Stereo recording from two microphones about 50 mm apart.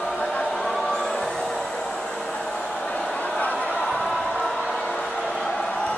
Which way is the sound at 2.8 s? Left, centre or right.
Centre.